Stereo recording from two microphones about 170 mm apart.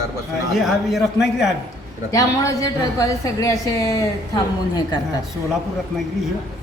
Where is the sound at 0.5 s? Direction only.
Centre (ahead or behind).